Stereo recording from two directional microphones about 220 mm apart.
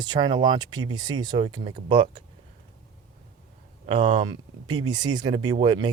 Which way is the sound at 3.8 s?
25° right (ahead or behind).